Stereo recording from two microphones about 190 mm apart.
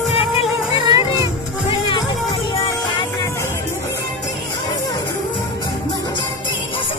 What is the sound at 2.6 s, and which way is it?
Music, 25° left (ahead or behind).